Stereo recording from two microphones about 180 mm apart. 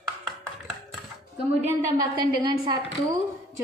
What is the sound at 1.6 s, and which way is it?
A woman's voice, 20° right (ahead or behind).